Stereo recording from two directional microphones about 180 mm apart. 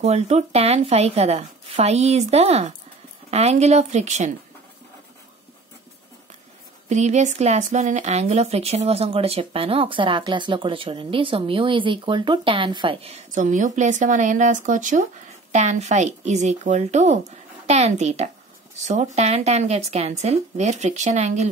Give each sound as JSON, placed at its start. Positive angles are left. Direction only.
{"t": 0.0, "sound": "speech", "side_deg": -35}
{"t": 6.9, "sound": "speech", "side_deg": -40}
{"t": 13.3, "sound": "speech", "side_deg": -45}